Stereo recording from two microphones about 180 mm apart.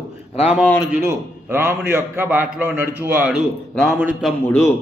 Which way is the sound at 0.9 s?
15° right (ahead or behind).